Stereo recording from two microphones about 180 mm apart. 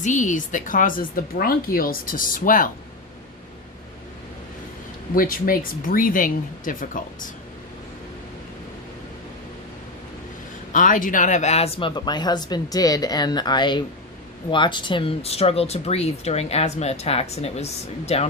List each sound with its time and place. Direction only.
0.0 s speech: 45° left (ahead or behind)
5.1 s speech: 50° left (ahead or behind)
10.7 s speech: 45° left (ahead or behind)